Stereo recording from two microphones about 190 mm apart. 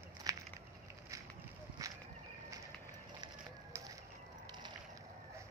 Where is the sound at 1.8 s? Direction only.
15° right (ahead or behind).